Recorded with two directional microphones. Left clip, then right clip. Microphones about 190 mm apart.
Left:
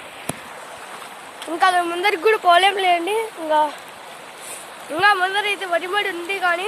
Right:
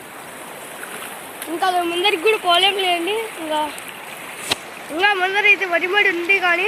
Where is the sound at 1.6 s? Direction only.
35° left (ahead or behind).